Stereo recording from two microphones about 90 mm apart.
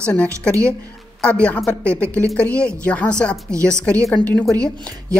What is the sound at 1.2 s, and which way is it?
Speech, 15° left (ahead or behind).